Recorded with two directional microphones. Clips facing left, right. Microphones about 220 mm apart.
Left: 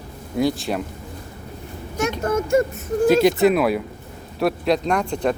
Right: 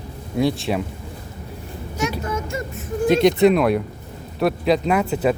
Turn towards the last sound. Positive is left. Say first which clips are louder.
# right 2 dB
turn(degrees=-5)  # may be behind; listen again after turning